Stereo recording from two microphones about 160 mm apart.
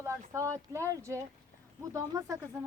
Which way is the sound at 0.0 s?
20° right (ahead or behind).